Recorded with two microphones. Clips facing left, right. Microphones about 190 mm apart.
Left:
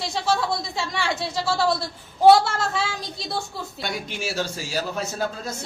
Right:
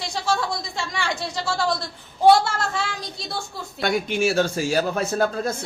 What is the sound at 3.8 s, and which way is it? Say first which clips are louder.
A man's voice: right 10 dB; 55° right (ahead or behind).